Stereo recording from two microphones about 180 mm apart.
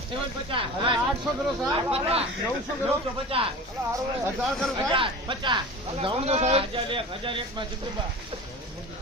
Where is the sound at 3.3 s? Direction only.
30° right (ahead or behind).